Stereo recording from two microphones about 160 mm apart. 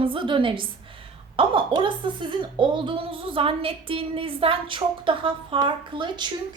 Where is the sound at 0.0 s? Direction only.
35° right (ahead or behind).